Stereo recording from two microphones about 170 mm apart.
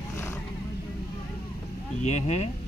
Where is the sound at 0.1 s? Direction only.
15° left (ahead or behind).